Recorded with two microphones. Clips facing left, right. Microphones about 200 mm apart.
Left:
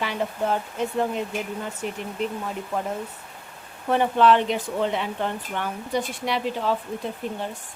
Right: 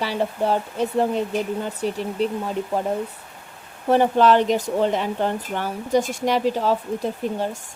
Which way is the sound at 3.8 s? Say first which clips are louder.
Right 3 dB; 40° right (ahead or behind).